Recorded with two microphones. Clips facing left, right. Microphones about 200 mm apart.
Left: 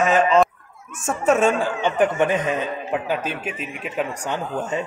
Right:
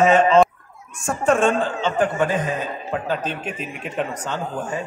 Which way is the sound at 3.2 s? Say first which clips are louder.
Even; 5° left (ahead or behind).